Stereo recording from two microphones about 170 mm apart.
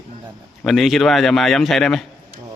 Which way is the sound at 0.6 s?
Centre (ahead or behind).